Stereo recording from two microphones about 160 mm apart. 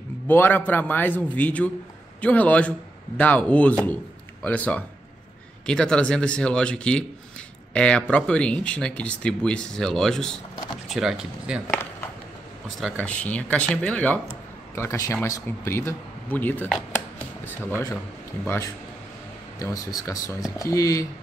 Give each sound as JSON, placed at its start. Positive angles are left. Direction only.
{"t": 0.3, "sound": "a man's voice", "side_deg": 10}
{"t": 13.0, "sound": "a man's voice", "side_deg": 10}